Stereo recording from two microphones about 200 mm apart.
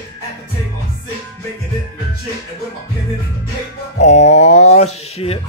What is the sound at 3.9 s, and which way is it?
Music, 35° left (ahead or behind).